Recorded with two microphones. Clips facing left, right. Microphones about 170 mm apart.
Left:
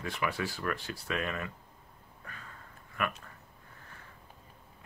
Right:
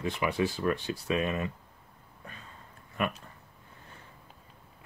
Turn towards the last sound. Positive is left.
turn(degrees=-20)  # may be behind; listen again after turning